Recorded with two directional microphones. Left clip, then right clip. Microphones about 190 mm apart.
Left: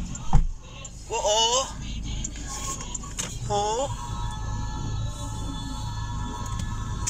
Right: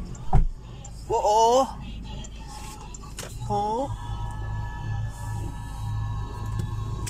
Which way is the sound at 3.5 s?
15° right (ahead or behind).